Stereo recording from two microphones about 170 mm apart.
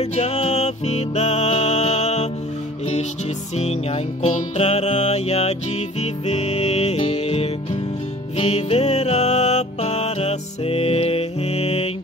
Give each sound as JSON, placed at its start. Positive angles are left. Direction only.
{"t": 0.0, "sound": "music", "side_deg": 40}
{"t": 3.5, "sound": "music", "side_deg": 40}